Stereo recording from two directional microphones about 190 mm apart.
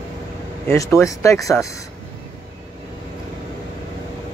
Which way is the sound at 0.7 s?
10° left (ahead or behind).